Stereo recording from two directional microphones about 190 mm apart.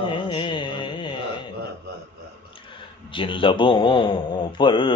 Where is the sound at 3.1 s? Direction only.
25° left (ahead or behind).